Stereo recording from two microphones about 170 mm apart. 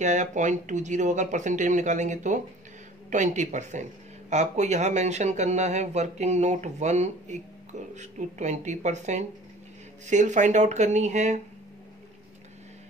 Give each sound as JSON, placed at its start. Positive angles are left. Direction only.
{"t": 0.0, "sound": "speech", "side_deg": -45}